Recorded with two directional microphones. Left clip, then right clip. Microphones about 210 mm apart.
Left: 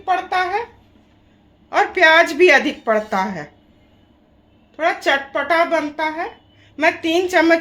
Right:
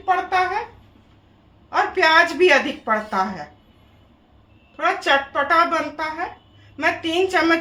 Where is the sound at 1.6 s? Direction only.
50° left (ahead or behind).